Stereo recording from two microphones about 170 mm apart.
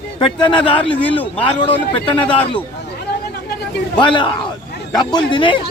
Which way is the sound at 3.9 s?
30° left (ahead or behind).